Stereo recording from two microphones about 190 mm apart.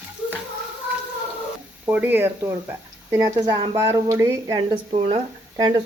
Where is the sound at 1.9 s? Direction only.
10° right (ahead or behind).